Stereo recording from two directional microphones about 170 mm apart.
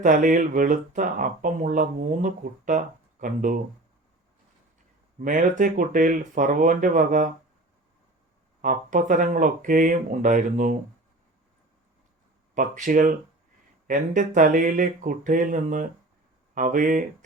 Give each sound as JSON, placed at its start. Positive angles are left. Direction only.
{"t": 0.0, "sound": "speech", "side_deg": -50}
{"t": 5.2, "sound": "speech", "side_deg": -50}
{"t": 8.6, "sound": "speech", "side_deg": -50}
{"t": 12.5, "sound": "speech", "side_deg": -50}